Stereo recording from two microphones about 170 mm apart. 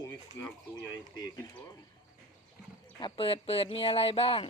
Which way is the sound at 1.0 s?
25° left (ahead or behind).